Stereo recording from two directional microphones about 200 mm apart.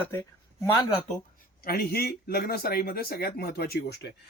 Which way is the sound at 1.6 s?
50° left (ahead or behind).